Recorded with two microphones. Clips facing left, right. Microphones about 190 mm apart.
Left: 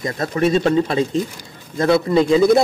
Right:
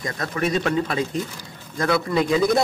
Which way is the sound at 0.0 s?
30° left (ahead or behind).